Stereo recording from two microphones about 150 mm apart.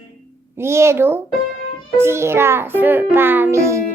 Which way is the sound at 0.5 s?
15° right (ahead or behind).